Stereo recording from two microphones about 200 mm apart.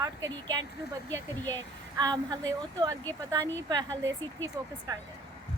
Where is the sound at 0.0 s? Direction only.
15° right (ahead or behind).